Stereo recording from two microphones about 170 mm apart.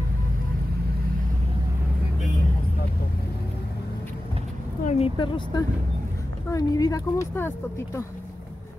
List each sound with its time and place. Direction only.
4.8 s speech: 35° left (ahead or behind); by 8.0 s 15° left (ahead or behind)